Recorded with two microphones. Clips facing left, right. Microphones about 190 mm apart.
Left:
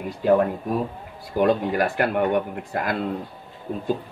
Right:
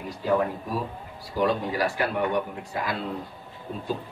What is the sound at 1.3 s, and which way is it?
A man's voice, 55° left (ahead or behind).